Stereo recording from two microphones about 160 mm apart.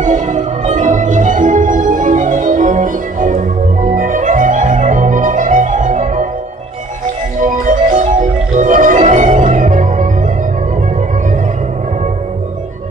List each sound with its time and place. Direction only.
0.0 s music: 50° right (ahead or behind)
7.3 s music: 55° right (ahead or behind)